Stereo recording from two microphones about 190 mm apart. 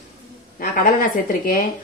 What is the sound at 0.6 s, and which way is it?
A woman's voice, 50° left (ahead or behind).